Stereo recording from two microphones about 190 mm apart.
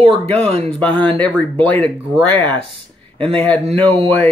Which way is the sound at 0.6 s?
5° left (ahead or behind).